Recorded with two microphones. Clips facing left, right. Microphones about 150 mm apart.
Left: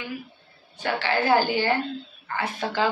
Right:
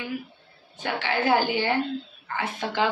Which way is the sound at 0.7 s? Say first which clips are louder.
Left 2 dB; 20° right (ahead or behind).